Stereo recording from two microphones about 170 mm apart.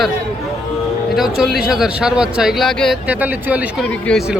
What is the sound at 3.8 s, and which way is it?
Speech, 5° left (ahead or behind).